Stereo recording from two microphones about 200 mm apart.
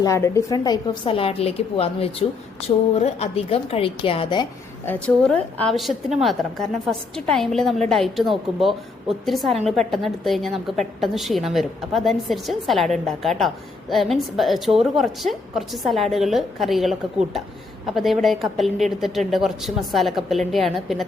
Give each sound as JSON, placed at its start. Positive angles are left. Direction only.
{"t": 0.0, "sound": "a woman's voice", "side_deg": 15}
{"t": 4.9, "sound": "a woman's voice", "side_deg": 5}